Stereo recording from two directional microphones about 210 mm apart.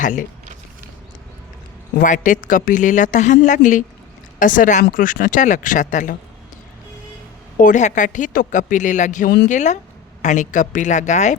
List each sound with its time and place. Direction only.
0.0 s a woman's voice: 40° left (ahead or behind)
2.0 s a woman's voice: 35° left (ahead or behind)
7.6 s a woman's voice: 35° left (ahead or behind)